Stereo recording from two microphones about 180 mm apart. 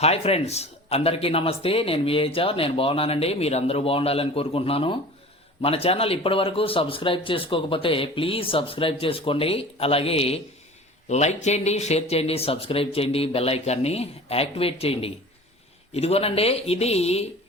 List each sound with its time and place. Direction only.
0.0 s speech: 35° left (ahead or behind)